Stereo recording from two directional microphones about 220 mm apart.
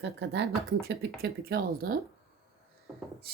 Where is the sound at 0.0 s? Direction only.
50° right (ahead or behind).